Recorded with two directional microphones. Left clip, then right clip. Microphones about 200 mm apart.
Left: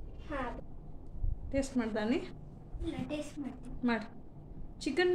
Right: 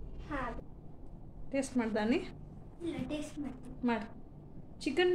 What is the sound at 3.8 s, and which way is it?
A woman's voice, 5° left (ahead or behind).